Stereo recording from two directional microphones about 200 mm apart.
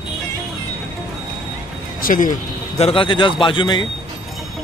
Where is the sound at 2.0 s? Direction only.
40° left (ahead or behind); by 3.9 s 25° left (ahead or behind).